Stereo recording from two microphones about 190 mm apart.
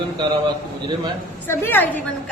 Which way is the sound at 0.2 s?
25° right (ahead or behind).